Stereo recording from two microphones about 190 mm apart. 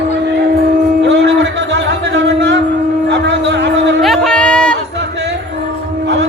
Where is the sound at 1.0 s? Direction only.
65° right (ahead or behind).